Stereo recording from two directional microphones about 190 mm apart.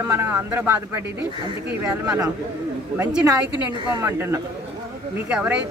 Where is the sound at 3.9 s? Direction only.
15° right (ahead or behind).